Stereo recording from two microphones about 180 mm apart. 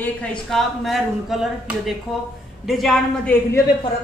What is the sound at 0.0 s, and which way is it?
Speech, 5° left (ahead or behind).